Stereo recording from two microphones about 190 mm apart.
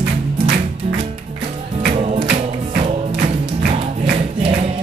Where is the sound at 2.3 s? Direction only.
35° right (ahead or behind).